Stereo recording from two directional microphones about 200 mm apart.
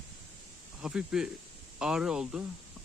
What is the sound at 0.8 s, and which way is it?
Speech, 5° right (ahead or behind).